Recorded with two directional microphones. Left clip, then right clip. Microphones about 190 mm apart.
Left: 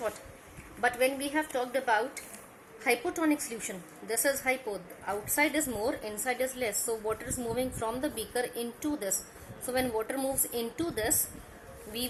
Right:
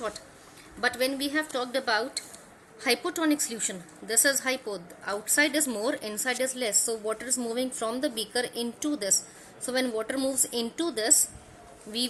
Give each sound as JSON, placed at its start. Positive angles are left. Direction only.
{"t": 0.9, "sound": "a woman's voice", "side_deg": -55}